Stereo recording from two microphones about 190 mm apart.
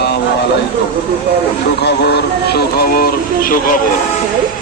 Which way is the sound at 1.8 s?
60° left (ahead or behind).